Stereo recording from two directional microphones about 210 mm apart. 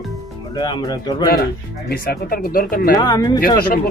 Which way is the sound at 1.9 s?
45° left (ahead or behind).